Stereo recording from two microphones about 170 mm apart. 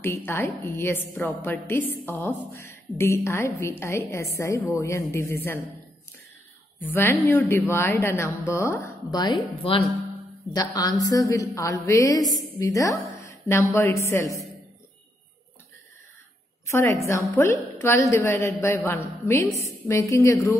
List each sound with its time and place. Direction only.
0.0 s a woman's voice: 15° left (ahead or behind)
6.8 s a woman's voice: 15° left (ahead or behind)
16.6 s a woman's voice: 15° left (ahead or behind)